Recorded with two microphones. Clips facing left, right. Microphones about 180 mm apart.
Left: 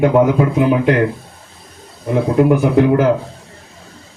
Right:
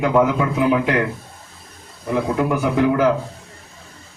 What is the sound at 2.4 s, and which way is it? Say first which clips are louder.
Speech: left 8 dB; 50° left (ahead or behind).